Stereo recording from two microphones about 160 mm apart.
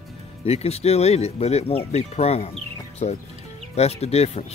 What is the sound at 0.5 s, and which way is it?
Speech, 40° left (ahead or behind).